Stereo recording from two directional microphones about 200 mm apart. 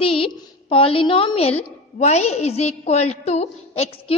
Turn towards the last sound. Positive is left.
turn(degrees=30)  # may be behind; listen again after turning